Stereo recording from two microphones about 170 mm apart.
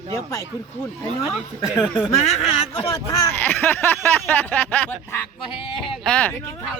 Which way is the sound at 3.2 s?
10° left (ahead or behind).